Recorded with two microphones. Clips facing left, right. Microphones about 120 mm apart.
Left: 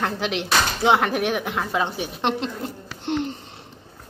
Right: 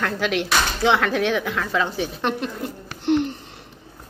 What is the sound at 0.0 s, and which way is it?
Speech, 20° left (ahead or behind).